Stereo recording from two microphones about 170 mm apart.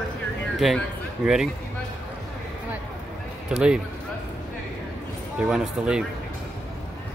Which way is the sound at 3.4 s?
5° right (ahead or behind).